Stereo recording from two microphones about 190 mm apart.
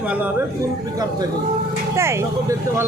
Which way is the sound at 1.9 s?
15° right (ahead or behind).